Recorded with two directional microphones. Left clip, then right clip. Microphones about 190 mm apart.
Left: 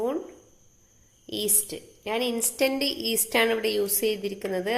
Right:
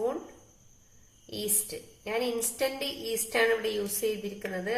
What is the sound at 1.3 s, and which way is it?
A woman's voice, 40° left (ahead or behind).